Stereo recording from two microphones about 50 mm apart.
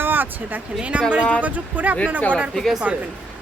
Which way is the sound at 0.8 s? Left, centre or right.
Right.